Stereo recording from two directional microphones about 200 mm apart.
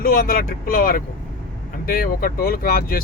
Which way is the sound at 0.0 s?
45° left (ahead or behind).